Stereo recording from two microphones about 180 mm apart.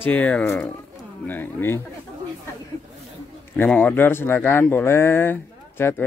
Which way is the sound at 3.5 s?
10° left (ahead or behind).